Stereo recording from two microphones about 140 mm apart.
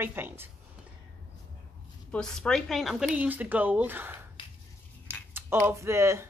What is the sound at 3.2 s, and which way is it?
Speech, 10° right (ahead or behind).